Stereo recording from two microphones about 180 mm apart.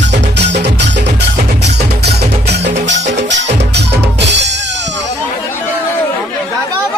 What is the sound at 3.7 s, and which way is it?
Drum kit, 70° right (ahead or behind).